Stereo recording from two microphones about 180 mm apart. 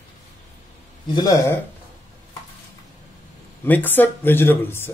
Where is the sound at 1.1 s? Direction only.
20° left (ahead or behind).